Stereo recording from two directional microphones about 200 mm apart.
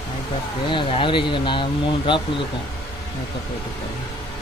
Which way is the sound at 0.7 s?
25° left (ahead or behind).